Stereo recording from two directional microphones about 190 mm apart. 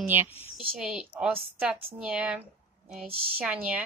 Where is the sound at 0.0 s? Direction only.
10° right (ahead or behind).